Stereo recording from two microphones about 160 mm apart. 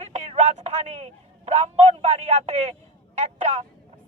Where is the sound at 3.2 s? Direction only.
45° right (ahead or behind).